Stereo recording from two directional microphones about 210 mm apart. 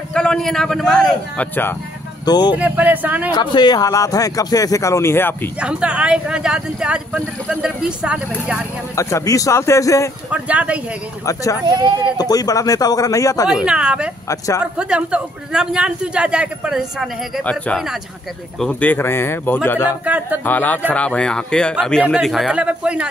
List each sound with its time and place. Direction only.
0.1 s a man's voice: 5° left (ahead or behind)
2.2 s speech: 20° left (ahead or behind)
2.5 s speech: 10° right (ahead or behind)
3.3 s speech: 20° left (ahead or behind)
5.6 s a man's voice: 5° right (ahead or behind)
8.9 s speech: 15° left (ahead or behind)
10.3 s speech: 5° right (ahead or behind)
11.2 s speech: 15° left (ahead or behind)
11.6 s speech: 20° right (ahead or behind)
12.2 s speech: 20° left (ahead or behind)
13.7 s a man's voice: 5° right (ahead or behind)
14.3 s speech: 15° left (ahead or behind)
14.6 s a man's voice: 5° right (ahead or behind)